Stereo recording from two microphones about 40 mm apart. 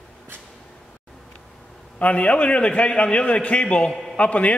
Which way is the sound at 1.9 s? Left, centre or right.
Left.